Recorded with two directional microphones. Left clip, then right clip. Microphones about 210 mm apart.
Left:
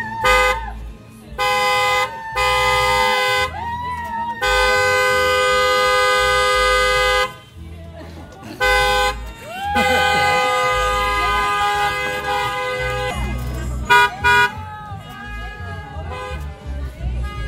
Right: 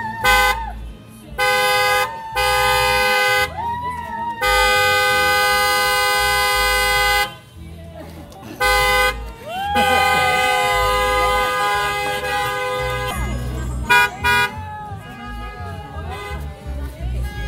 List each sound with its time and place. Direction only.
0.2 s vehicle: 45° right (ahead or behind)
1.3 s vehicle: 20° right (ahead or behind)
4.4 s toot: 20° right (ahead or behind); by 7.2 s 50° right (ahead or behind)
8.5 s car: 25° right (ahead or behind)
9.8 s vehicle: 15° right (ahead or behind); by 13.1 s 50° right (ahead or behind)
13.8 s vehicle: 20° right (ahead or behind)